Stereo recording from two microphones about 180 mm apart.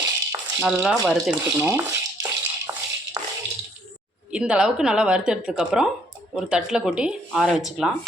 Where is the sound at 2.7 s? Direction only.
20° right (ahead or behind).